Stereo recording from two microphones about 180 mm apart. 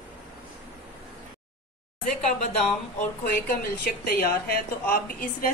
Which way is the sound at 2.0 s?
45° left (ahead or behind).